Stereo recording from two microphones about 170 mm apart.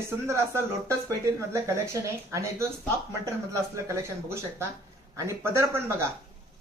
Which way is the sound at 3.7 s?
15° right (ahead or behind).